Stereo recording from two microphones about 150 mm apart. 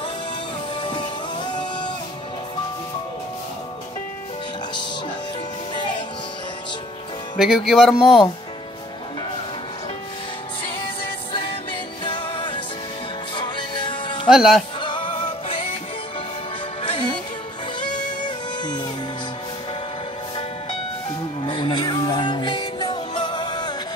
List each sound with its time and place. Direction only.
1.5 s music: 30° left (ahead or behind)
7.3 s speech: 5° right (ahead or behind)
12.0 s music: 35° left (ahead or behind)
14.3 s speech: centre (ahead or behind)
14.8 s music: 35° left (ahead or behind)
16.8 s music: 35° left (ahead or behind)
21.4 s music: 35° left (ahead or behind)